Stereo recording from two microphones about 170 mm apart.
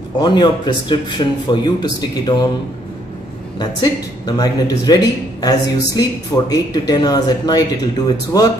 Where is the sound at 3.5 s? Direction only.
20° left (ahead or behind).